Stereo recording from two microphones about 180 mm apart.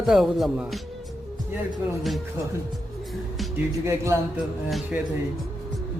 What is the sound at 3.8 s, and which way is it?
Speech, 15° right (ahead or behind).